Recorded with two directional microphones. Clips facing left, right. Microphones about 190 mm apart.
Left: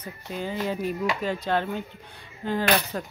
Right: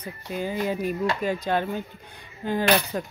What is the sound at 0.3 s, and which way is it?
Speech, 10° right (ahead or behind).